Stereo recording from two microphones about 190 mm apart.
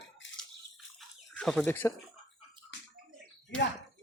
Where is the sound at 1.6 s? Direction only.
10° left (ahead or behind).